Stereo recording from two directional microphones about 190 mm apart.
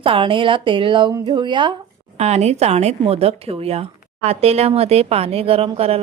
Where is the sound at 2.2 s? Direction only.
35° right (ahead or behind).